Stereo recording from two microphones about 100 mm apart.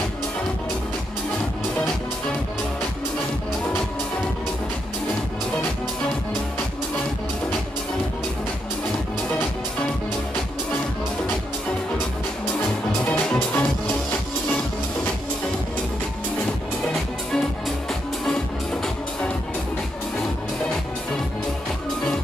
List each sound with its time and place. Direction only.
13.0 s music: 15° left (ahead or behind)